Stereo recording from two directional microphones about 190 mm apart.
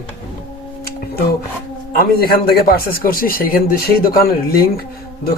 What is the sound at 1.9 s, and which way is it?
A man's voice, 50° left (ahead or behind).